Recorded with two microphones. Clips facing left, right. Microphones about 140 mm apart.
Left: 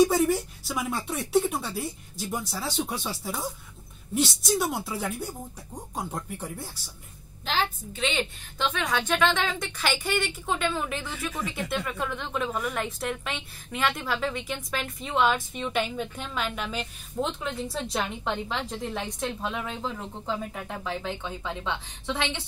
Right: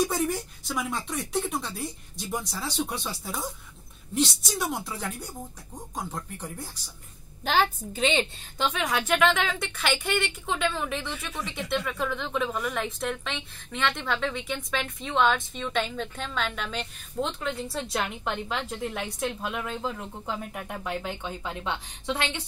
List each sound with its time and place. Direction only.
0.1 s a woman's voice: 5° left (ahead or behind)
7.4 s a woman's voice: 45° right (ahead or behind)
8.0 s a woman's voice: 30° right (ahead or behind)
8.7 s a woman's voice: 10° right (ahead or behind)